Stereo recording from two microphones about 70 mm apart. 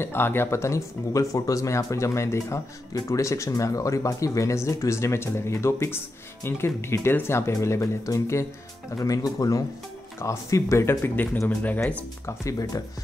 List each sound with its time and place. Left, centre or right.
0.0 s speech: left
8.9 s speech: left
11.4 s speech: left
12.3 s speech: left